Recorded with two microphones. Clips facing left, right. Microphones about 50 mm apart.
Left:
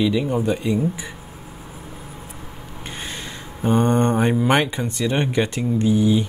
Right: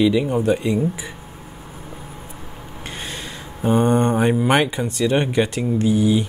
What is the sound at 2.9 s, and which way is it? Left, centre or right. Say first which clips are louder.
Speech: right 1 dB; centre.